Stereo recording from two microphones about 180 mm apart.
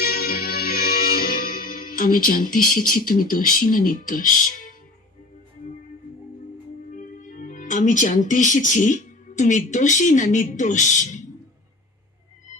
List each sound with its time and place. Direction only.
0.0 s music: 60° left (ahead or behind)
6.9 s speech: 45° left (ahead or behind)